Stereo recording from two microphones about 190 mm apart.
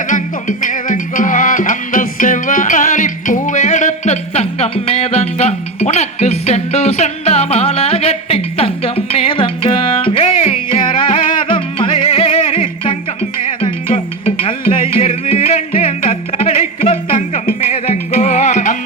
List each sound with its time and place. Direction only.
0.1 s music: 45° left (ahead or behind)